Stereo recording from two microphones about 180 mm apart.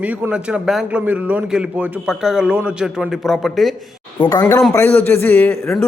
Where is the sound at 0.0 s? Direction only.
5° right (ahead or behind).